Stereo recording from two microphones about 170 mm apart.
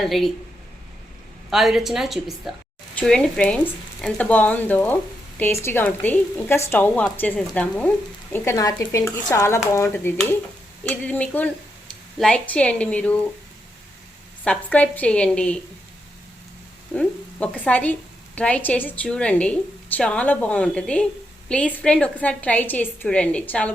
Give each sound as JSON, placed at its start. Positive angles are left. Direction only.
{"t": 0.0, "sound": "a woman's voice", "side_deg": 0}
{"t": 1.5, "sound": "a woman's voice", "side_deg": 0}
{"t": 8.3, "sound": "a woman's voice", "side_deg": 15}
{"t": 14.4, "sound": "a woman's voice", "side_deg": 5}
{"t": 16.9, "sound": "a woman's voice", "side_deg": 5}